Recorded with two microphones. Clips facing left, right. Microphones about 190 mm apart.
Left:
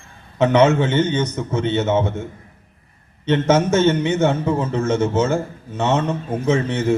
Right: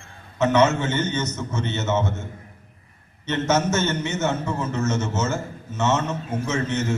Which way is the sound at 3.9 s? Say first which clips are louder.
Left 8 dB; 15° left (ahead or behind).